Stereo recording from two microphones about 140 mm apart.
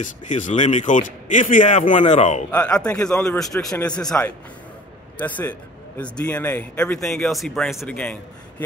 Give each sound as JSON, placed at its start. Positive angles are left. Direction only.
{"t": 0.0, "sound": "speech", "side_deg": 60}
{"t": 2.5, "sound": "a man's voice", "side_deg": 10}